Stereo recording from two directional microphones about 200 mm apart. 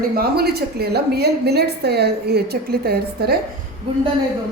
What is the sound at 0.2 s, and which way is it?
A woman's voice, 50° right (ahead or behind).